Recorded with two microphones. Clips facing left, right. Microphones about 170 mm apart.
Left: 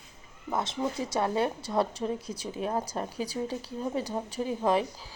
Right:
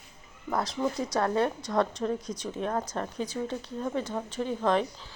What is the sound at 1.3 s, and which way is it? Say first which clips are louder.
Speech: right 1 dB; 25° left (ahead or behind).